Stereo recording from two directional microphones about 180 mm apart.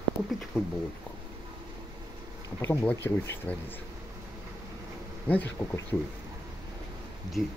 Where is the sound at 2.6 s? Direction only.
15° left (ahead or behind).